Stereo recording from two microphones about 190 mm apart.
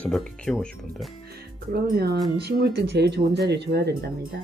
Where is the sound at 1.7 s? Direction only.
55° right (ahead or behind).